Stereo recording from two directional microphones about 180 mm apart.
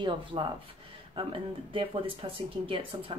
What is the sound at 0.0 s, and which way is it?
A woman's voice, 25° right (ahead or behind).